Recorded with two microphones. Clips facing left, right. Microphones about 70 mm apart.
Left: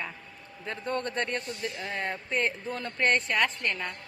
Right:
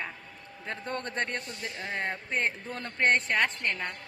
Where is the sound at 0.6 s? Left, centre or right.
Right.